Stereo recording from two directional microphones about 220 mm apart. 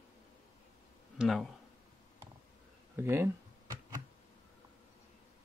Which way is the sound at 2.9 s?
10° right (ahead or behind).